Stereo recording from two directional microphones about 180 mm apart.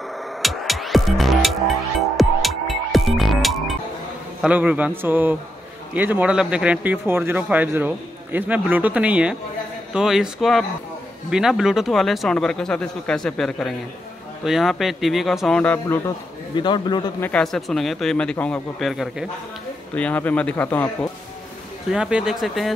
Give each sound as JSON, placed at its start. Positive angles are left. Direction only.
{"t": 0.4, "sound": "music", "side_deg": 0}
{"t": 4.4, "sound": "speech", "side_deg": -5}
{"t": 16.5, "sound": "a man's voice", "side_deg": 25}
{"t": 17.2, "sound": "speech", "side_deg": 5}
{"t": 21.9, "sound": "speech", "side_deg": -5}